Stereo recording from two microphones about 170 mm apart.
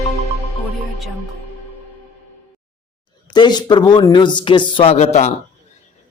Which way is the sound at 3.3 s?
25° left (ahead or behind).